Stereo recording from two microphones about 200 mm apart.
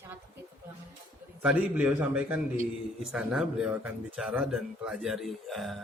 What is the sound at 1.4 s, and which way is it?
A man's voice, 5° right (ahead or behind).